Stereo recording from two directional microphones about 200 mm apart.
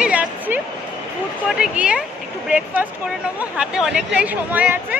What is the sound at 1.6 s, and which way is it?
Speech, 5° right (ahead or behind).